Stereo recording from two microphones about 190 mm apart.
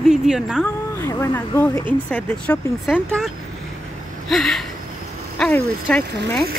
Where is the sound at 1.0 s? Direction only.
15° left (ahead or behind).